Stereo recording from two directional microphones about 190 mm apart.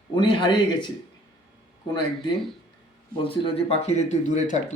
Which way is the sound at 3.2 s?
30° left (ahead or behind).